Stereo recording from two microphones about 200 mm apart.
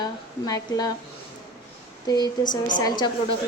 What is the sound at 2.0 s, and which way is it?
Speech, 20° left (ahead or behind).